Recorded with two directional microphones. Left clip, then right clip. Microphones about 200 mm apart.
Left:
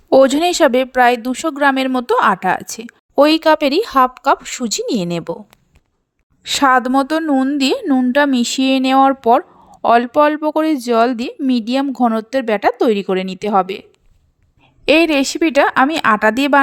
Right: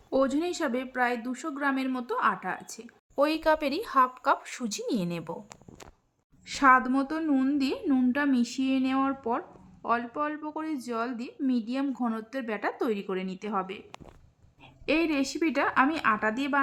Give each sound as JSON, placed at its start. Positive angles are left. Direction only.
{"t": 0.1, "sound": "speech", "side_deg": 45}
{"t": 6.4, "sound": "speech", "side_deg": 40}
{"t": 7.3, "sound": "a woman's voice", "side_deg": 30}
{"t": 7.6, "sound": "a woman's voice", "side_deg": 40}
{"t": 14.8, "sound": "speech", "side_deg": 45}